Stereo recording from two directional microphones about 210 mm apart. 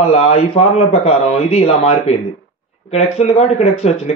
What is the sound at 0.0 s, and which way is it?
A man's voice, 30° left (ahead or behind).